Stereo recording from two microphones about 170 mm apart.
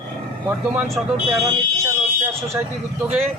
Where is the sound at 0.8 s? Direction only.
5° right (ahead or behind).